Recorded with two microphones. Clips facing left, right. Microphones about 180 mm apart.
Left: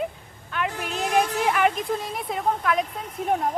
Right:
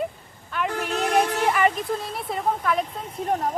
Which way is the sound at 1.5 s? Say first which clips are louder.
Even; centre (ahead or behind).